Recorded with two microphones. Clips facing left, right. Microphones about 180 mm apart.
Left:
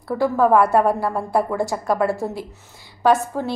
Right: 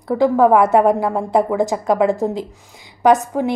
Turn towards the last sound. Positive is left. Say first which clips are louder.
# right 4 dB
turn(degrees=-15)  # may be behind; listen again after turning